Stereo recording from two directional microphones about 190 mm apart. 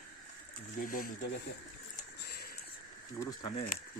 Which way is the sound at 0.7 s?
45° left (ahead or behind).